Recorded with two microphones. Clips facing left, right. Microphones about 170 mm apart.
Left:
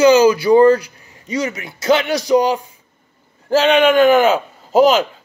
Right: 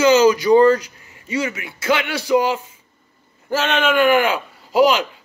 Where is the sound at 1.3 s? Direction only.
35° left (ahead or behind).